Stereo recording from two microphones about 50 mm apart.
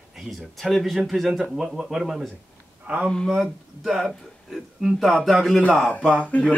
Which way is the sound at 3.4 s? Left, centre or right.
Centre.